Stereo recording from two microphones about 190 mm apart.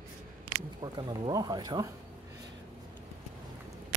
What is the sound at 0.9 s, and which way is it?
Speech, 25° right (ahead or behind).